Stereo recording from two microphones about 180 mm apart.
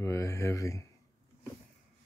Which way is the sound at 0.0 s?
15° left (ahead or behind).